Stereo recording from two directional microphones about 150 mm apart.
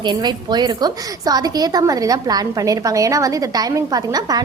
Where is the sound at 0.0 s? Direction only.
30° right (ahead or behind).